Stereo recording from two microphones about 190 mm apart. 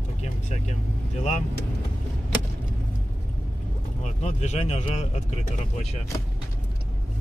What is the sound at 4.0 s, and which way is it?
Speech, 35° left (ahead or behind).